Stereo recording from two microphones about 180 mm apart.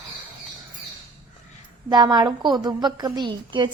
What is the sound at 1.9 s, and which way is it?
A woman's voice, 25° right (ahead or behind).